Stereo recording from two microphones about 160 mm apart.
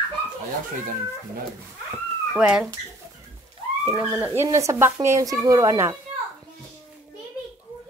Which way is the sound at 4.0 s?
15° right (ahead or behind).